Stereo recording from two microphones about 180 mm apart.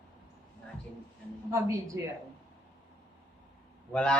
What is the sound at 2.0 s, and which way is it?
Speech, 15° right (ahead or behind).